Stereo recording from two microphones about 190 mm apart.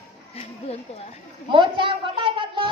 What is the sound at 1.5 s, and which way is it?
A woman's voice, 25° right (ahead or behind).